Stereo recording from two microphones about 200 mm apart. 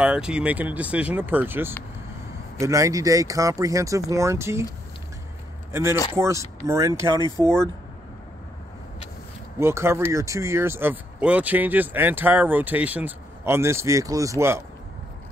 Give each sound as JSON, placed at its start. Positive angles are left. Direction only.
{"t": 0.0, "sound": "speech", "side_deg": -5}
{"t": 5.7, "sound": "speech", "side_deg": -15}
{"t": 9.6, "sound": "speech", "side_deg": -15}